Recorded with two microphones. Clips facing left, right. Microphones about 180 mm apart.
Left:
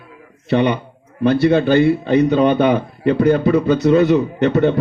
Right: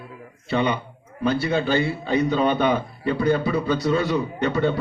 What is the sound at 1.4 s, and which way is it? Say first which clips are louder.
Speech: left 9 dB; 55° left (ahead or behind).